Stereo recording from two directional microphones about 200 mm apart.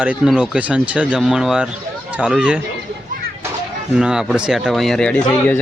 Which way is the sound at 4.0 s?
5° right (ahead or behind).